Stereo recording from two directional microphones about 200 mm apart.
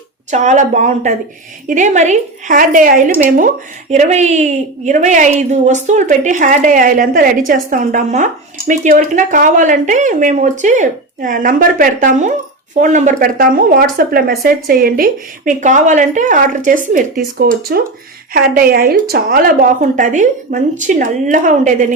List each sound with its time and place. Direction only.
0.3 s a woman's voice: 35° right (ahead or behind)